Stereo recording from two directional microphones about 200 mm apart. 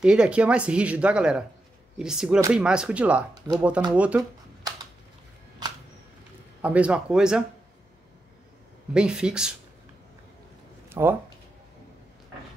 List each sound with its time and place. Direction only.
0.0 s speech: 5° right (ahead or behind)
6.6 s speech: 5° right (ahead or behind)
8.9 s speech: 5° right (ahead or behind)
10.9 s speech: 10° right (ahead or behind)